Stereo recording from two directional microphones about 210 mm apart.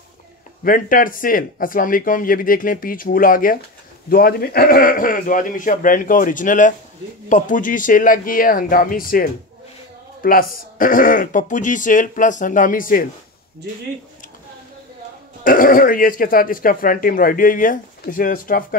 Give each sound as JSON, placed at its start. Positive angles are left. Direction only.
{"t": 0.7, "sound": "speech", "side_deg": 40}
{"t": 15.4, "sound": "speech", "side_deg": 40}